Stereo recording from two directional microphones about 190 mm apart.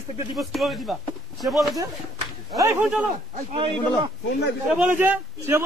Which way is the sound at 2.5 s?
15° right (ahead or behind).